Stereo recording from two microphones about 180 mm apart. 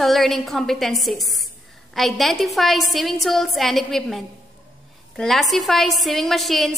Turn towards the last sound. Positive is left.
turn(degrees=0)  # may be behind; listen again after turning